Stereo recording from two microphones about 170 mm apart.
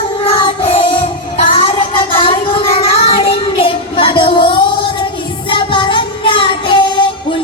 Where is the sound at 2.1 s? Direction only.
30° left (ahead or behind).